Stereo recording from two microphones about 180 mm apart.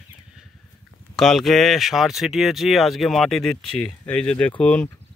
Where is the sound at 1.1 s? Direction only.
Centre (ahead or behind).